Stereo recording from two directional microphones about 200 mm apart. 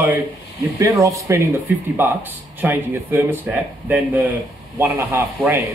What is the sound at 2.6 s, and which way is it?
A man's voice, 10° right (ahead or behind).